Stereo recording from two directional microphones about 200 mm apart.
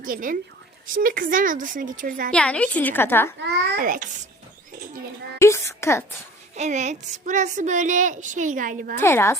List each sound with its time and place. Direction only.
0.0 s a woman's voice: 45° right (ahead or behind)
2.3 s a woman's voice: 5° left (ahead or behind)
3.4 s a woman's voice: 45° right (ahead or behind)
5.4 s a woman's voice: 15° left (ahead or behind)
6.6 s a woman's voice: 35° right (ahead or behind)
9.0 s a woman's voice: 10° left (ahead or behind)